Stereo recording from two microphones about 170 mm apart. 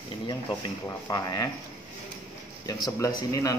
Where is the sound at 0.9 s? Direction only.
20° left (ahead or behind).